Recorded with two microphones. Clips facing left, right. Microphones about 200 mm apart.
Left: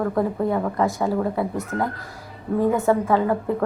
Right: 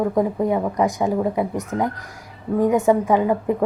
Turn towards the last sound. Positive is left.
turn(degrees=-15)  # may be behind; listen again after turning